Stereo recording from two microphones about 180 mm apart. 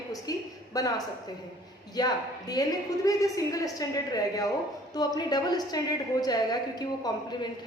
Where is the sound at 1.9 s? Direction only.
20° left (ahead or behind).